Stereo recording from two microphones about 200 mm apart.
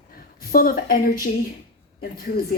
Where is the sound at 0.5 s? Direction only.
45° left (ahead or behind).